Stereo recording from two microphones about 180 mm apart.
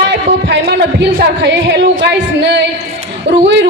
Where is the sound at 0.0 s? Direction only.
75° right (ahead or behind).